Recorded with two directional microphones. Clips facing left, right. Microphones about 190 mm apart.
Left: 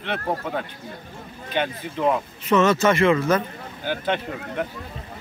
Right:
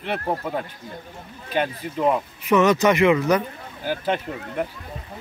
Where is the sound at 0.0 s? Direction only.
5° right (ahead or behind).